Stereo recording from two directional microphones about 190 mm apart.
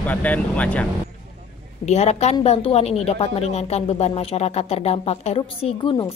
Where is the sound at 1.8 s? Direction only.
35° left (ahead or behind).